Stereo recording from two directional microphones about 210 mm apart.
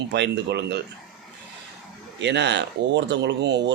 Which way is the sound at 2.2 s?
55° right (ahead or behind).